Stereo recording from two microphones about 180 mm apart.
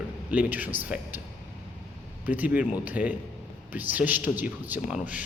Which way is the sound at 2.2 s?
10° right (ahead or behind).